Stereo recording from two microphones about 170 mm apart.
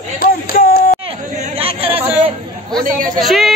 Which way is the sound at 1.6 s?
35° right (ahead or behind).